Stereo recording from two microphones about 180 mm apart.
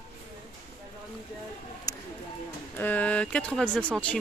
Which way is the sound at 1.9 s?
20° left (ahead or behind).